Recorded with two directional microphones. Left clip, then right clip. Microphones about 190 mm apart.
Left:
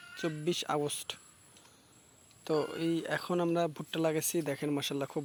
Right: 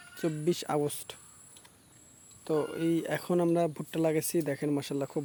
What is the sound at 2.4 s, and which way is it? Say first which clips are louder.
Speech: right 2 dB; 10° left (ahead or behind).